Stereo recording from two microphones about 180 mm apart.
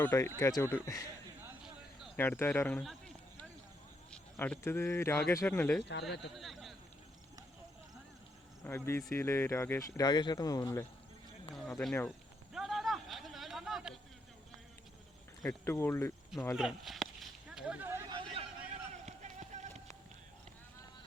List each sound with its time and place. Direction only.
0.0 s speech: 15° left (ahead or behind)
1.4 s a sound: 5° right (ahead or behind)
2.1 s speech: 10° left (ahead or behind)
2.8 s a sound: centre (ahead or behind)
4.1 s speech: 5° left (ahead or behind)
5.9 s speech: 70° left (ahead or behind)
6.3 s speech: centre (ahead or behind)
8.6 s speech: 15° left (ahead or behind)
10.0 s speech: 25° left (ahead or behind)
12.5 s a sound: centre (ahead or behind)
15.4 s speech: 15° left (ahead or behind)
16.6 s a sound: centre (ahead or behind); by 19.8 s 40° right (ahead or behind)